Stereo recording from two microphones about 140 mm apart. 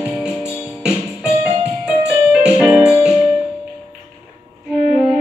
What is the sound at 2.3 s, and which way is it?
Music, 5° right (ahead or behind).